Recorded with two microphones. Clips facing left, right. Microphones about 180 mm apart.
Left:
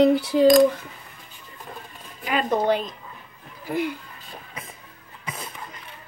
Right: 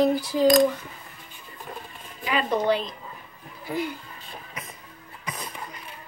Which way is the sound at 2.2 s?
45° left (ahead or behind).